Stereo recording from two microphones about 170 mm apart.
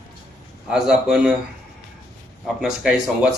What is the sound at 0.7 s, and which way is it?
Speech, 5° right (ahead or behind).